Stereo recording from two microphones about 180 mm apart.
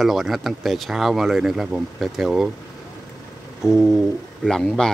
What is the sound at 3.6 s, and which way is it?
A man's voice, 5° right (ahead or behind).